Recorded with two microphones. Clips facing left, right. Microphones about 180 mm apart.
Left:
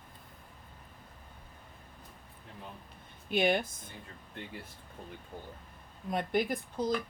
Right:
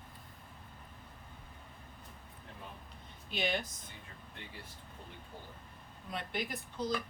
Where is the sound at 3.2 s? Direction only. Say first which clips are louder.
Left 8 dB; 50° left (ahead or behind).